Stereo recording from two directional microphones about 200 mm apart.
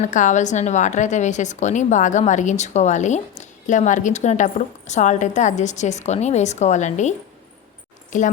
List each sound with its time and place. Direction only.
0.0 s a woman's voice: 40° left (ahead or behind)